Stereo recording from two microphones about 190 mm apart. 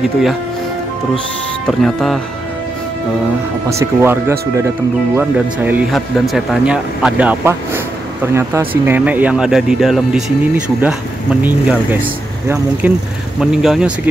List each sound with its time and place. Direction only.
1.7 s speech: centre (ahead or behind)
3.7 s speech: 15° right (ahead or behind)
11.4 s speech: 10° right (ahead or behind)